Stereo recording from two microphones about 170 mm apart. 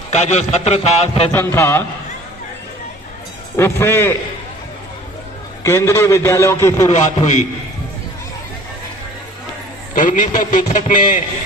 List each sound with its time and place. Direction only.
0.1 s a man's voice: 40° left (ahead or behind)
1.3 s a man's voice: 15° left (ahead or behind)
3.5 s a man's voice: 15° left (ahead or behind)
5.6 s a man's voice: 15° left (ahead or behind)
6.9 s a man's voice: 45° left (ahead or behind)
9.9 s a man's voice: 50° left (ahead or behind)